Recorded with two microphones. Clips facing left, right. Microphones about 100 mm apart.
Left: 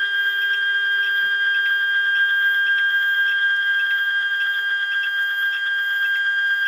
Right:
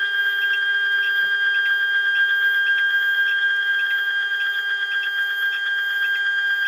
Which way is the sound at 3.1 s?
35° left (ahead or behind).